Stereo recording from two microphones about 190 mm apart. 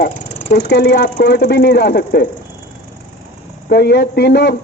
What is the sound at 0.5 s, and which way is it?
A man's voice, 60° left (ahead or behind).